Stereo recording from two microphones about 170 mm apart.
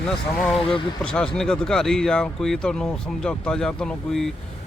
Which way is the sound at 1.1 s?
5° left (ahead or behind).